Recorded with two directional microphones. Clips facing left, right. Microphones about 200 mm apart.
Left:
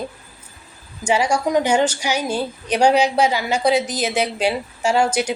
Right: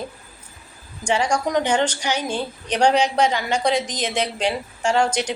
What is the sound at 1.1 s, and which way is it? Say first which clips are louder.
A woman's voice: left 2 dB; 5° left (ahead or behind).